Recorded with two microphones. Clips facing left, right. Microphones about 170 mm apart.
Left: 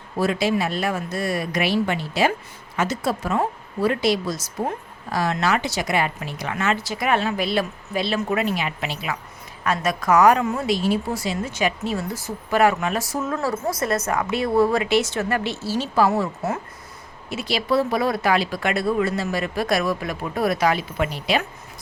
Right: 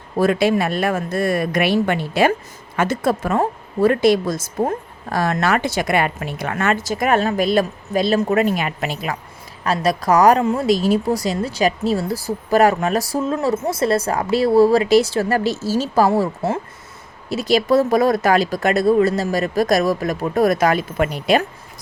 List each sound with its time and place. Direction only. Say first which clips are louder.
0.2 s speech: right 5 dB; 55° right (ahead or behind)
9.6 s a woman's voice: right 3 dB; 35° right (ahead or behind); by 21.4 s 50° right (ahead or behind)